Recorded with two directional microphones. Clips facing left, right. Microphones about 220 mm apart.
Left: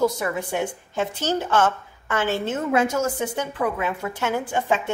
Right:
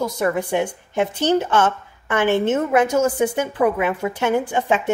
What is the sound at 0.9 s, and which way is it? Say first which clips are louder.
Speech: right 7 dB; 20° right (ahead or behind).